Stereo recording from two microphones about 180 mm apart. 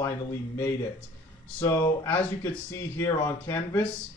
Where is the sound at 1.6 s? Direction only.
10° left (ahead or behind).